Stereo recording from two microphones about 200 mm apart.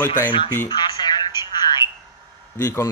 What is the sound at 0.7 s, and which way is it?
Telephone, 20° left (ahead or behind).